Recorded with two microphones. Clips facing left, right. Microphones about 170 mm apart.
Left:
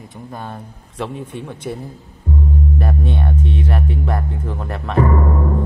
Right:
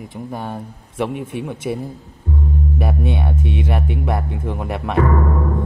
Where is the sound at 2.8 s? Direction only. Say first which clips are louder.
Even; 10° right (ahead or behind).